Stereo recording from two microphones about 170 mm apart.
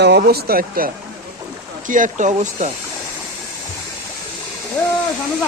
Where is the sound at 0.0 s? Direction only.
75° right (ahead or behind).